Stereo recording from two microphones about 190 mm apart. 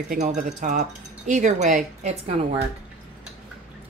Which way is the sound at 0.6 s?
40° right (ahead or behind).